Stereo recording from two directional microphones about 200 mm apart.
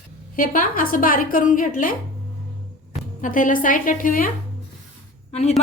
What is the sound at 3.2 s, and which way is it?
A woman's voice, 40° left (ahead or behind).